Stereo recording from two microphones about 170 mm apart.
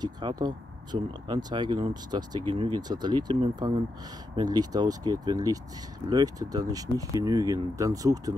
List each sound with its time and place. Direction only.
0.0 s speech: 25° right (ahead or behind)